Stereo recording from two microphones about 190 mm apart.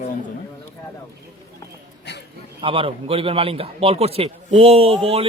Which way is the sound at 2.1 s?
60° left (ahead or behind).